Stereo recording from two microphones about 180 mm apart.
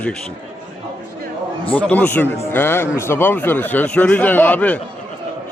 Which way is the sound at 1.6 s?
10° left (ahead or behind).